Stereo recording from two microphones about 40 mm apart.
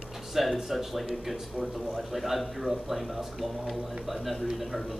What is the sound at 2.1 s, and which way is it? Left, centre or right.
Speech, centre.